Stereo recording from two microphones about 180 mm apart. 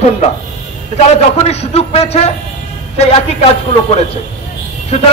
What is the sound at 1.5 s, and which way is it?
A man's voice, 35° left (ahead or behind).